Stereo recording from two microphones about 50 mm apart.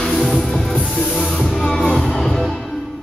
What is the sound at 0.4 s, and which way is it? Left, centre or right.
Music, centre.